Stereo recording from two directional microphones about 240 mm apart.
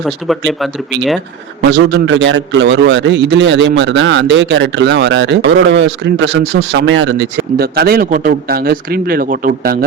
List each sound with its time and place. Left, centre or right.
0.0 s speech: centre
1.7 s a man's voice: right